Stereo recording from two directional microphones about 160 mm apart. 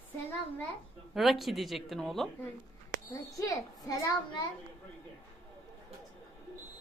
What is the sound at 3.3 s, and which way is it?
A child's voice, 20° left (ahead or behind).